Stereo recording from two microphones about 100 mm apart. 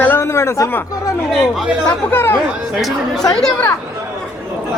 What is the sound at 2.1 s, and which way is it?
Speech, 20° left (ahead or behind).